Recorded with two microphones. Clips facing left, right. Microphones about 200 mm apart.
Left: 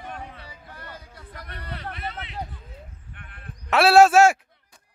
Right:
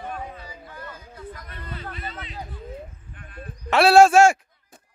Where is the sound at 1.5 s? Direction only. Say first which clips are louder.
Even; 65° left (ahead or behind).